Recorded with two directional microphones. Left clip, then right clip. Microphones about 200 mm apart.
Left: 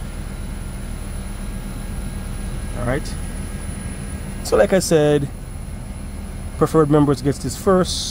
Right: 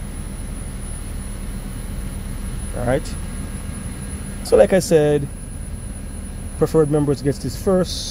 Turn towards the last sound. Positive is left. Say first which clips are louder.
# left 2 dB
turn(degrees=10)  # may be behind; listen again after turning